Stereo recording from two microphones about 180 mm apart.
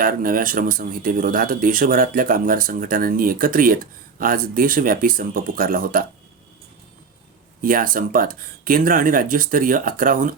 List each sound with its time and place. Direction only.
0.0 s speech: 50° right (ahead or behind)
7.6 s speech: 50° right (ahead or behind)